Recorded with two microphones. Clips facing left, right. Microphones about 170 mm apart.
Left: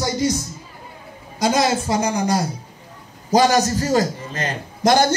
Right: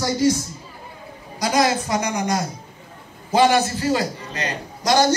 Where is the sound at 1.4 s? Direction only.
25° left (ahead or behind).